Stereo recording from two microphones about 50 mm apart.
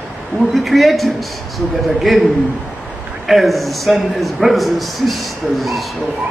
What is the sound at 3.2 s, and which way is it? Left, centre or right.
A man's voice, centre.